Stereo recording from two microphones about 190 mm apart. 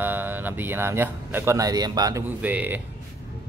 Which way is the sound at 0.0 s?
10° right (ahead or behind).